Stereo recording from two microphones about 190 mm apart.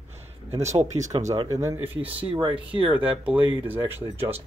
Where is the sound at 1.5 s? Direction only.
15° right (ahead or behind).